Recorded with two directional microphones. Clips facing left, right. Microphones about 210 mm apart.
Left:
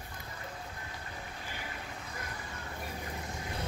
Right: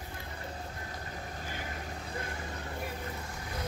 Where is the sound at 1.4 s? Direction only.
45° right (ahead or behind).